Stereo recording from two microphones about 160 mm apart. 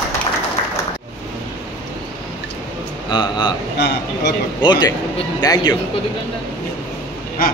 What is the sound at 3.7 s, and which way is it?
Speech, 90° left.